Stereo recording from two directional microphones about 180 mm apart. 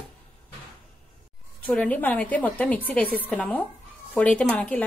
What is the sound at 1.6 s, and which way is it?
A woman's voice, 5° left (ahead or behind).